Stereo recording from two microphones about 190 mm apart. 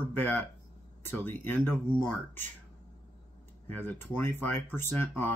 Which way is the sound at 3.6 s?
10° left (ahead or behind).